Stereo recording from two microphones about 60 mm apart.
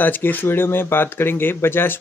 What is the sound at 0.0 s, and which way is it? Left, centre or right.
Speech, left.